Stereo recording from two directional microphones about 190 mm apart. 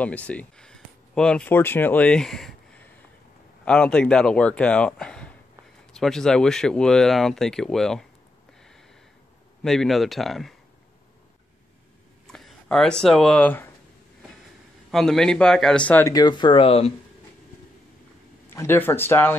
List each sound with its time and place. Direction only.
0.0 s speech: 5° left (ahead or behind)
9.6 s speech: centre (ahead or behind)
12.3 s speech: centre (ahead or behind)
14.9 s speech: centre (ahead or behind); by 16.9 s 30° left (ahead or behind)
18.5 s speech: 10° left (ahead or behind)